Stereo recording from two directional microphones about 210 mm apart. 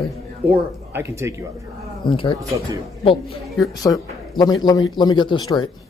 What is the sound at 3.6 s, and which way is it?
A man's voice, 15° left (ahead or behind).